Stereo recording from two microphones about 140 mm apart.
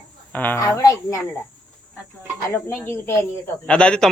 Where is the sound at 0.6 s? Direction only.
25° left (ahead or behind).